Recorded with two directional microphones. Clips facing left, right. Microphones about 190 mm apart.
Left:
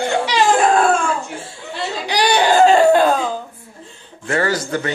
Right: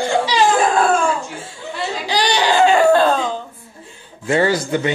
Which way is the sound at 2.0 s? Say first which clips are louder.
Left 2 dB; 55° left (ahead or behind).